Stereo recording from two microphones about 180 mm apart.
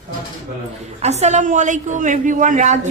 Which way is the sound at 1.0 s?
40° right (ahead or behind).